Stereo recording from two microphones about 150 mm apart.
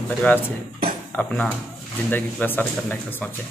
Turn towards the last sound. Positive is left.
turn(degrees=10)  # may be behind; listen again after turning